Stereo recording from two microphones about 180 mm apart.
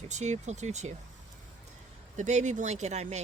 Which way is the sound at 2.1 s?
40° right (ahead or behind).